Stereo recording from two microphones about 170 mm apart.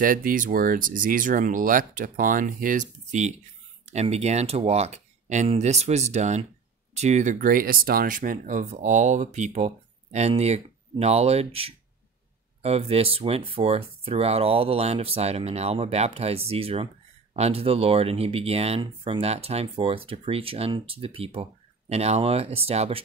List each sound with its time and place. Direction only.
0.0 s speech: 55° right (ahead or behind); by 23.0 s 35° right (ahead or behind)